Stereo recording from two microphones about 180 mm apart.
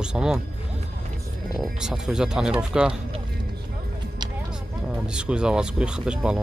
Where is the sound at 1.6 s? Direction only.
5° right (ahead or behind).